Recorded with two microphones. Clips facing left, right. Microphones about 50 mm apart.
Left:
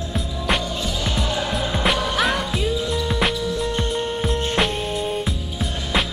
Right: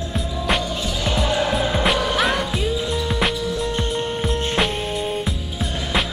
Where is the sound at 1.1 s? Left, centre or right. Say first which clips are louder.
Right 6 dB; centre.